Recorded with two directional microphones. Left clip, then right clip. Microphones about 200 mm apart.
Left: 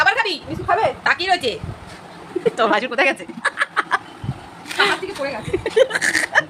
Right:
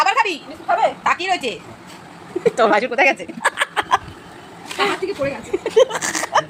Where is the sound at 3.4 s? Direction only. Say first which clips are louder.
Right 2 dB; 20° right (ahead or behind).